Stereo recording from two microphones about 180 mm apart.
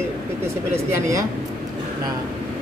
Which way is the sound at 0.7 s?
15° right (ahead or behind).